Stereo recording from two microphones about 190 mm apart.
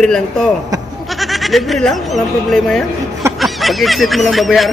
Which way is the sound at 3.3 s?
Centre (ahead or behind).